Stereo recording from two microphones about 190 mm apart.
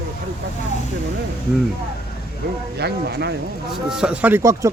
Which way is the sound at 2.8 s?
60° right (ahead or behind).